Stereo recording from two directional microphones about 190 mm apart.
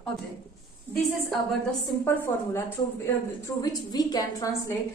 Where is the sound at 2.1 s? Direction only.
10° left (ahead or behind).